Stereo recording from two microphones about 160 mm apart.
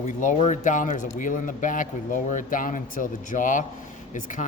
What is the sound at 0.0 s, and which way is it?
Speech, 50° left (ahead or behind).